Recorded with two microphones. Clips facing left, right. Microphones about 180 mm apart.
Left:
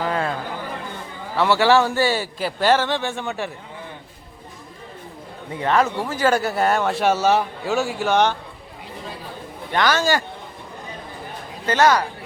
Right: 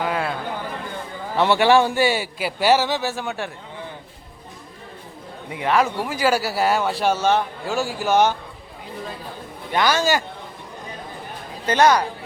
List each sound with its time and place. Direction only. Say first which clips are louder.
0.0 s a sound: left 1 dB; 10° right (ahead or behind)
1.4 s a man's voice: right 1 dB; 20° right (ahead or behind); by 3.5 s centre (ahead or behind)
5.5 s a man's voice: even; 10° right (ahead or behind)
9.7 s a man's voice: even; 10° right (ahead or behind)
11.6 s speech: right 1 dB; 20° right (ahead or behind)